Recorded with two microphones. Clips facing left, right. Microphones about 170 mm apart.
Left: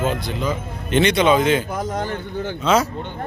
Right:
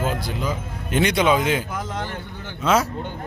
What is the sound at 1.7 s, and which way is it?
Speech, 35° left (ahead or behind).